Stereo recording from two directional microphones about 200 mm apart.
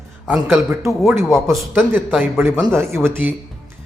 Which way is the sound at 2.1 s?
5° right (ahead or behind).